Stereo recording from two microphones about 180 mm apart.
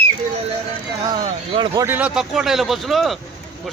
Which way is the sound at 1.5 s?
25° right (ahead or behind).